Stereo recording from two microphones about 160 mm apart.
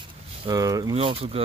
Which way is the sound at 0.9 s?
35° right (ahead or behind).